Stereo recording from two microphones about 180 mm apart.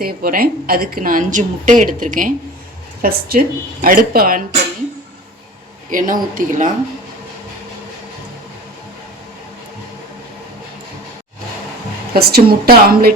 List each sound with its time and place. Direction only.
0.0 s a woman's voice: 55° right (ahead or behind)
5.9 s a woman's voice: 50° right (ahead or behind)
12.1 s a woman's voice: 60° right (ahead or behind)